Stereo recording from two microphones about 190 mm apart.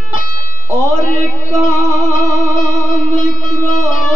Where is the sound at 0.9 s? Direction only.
40° left (ahead or behind).